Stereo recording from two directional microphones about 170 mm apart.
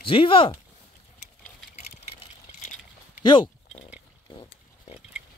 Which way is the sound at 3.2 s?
25° left (ahead or behind).